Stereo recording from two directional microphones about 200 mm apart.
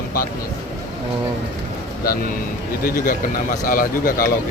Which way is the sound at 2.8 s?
45° left (ahead or behind).